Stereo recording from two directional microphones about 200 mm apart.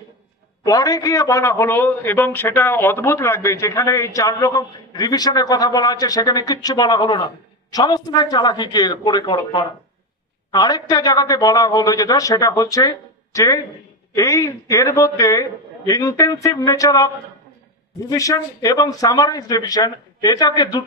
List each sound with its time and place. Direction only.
0.7 s a man's voice: 20° left (ahead or behind)
18.1 s a man's voice: 15° left (ahead or behind)